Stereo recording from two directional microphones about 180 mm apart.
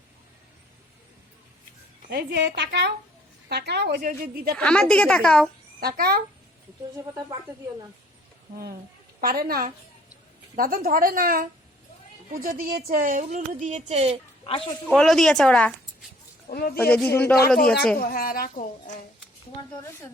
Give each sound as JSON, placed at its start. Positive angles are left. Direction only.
{"t": 2.0, "sound": "a woman's voice", "side_deg": -60}
{"t": 4.5, "sound": "a woman's voice", "side_deg": 5}
{"t": 5.8, "sound": "a woman's voice", "side_deg": -55}
{"t": 9.2, "sound": "a woman's voice", "side_deg": -55}
{"t": 14.8, "sound": "a woman's voice", "side_deg": 5}
{"t": 16.5, "sound": "a woman's voice", "side_deg": 55}
{"t": 16.7, "sound": "speech", "side_deg": 10}
{"t": 17.9, "sound": "a woman's voice", "side_deg": 55}